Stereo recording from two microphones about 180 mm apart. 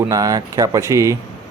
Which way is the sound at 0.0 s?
20° right (ahead or behind).